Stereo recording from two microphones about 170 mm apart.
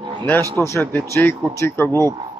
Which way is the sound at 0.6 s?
15° left (ahead or behind).